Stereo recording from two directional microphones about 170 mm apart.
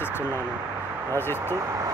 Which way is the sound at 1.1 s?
15° left (ahead or behind).